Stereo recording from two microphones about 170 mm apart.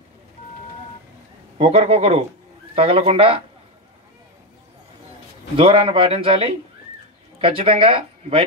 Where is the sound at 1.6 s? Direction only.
35° right (ahead or behind).